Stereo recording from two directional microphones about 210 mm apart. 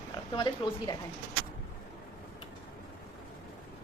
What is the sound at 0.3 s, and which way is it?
Speech, 20° left (ahead or behind).